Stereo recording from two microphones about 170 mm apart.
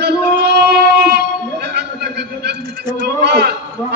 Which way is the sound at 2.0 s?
75° right (ahead or behind).